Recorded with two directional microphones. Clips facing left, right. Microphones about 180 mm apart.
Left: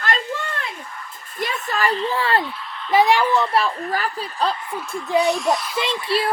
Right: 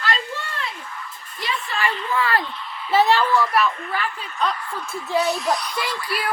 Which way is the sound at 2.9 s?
15° left (ahead or behind).